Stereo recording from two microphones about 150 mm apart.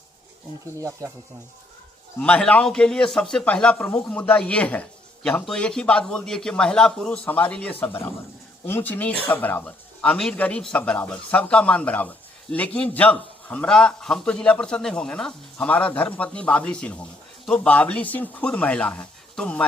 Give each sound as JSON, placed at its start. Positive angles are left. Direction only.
{"t": 0.6, "sound": "speech", "side_deg": -20}
{"t": 2.1, "sound": "a man's voice", "side_deg": 10}